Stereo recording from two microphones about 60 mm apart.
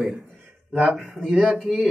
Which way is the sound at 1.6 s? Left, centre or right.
Centre.